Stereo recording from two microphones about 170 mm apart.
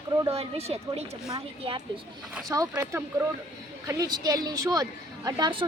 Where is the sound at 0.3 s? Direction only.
35° right (ahead or behind).